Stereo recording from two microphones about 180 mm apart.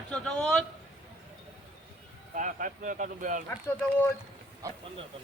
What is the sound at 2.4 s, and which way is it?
Speech, 45° right (ahead or behind).